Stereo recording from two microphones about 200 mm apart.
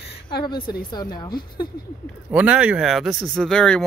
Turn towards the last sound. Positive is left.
turn(degrees=5)  # may be behind; listen again after turning